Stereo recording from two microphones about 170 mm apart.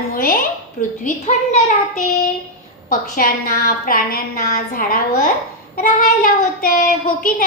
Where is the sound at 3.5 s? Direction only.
55° left (ahead or behind).